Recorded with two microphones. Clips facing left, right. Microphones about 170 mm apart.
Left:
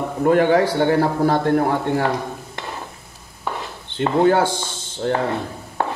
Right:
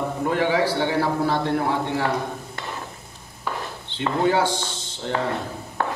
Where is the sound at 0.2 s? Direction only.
50° left (ahead or behind).